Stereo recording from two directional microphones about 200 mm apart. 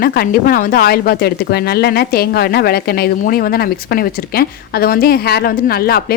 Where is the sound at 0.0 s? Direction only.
50° left (ahead or behind).